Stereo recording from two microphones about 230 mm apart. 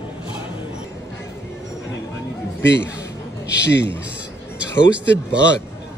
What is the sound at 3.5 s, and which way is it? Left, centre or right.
Speech, left.